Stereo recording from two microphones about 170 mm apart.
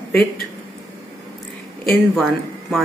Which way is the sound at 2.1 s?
Centre (ahead or behind).